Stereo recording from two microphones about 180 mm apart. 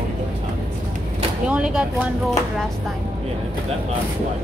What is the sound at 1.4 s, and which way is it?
Speech, 5° right (ahead or behind).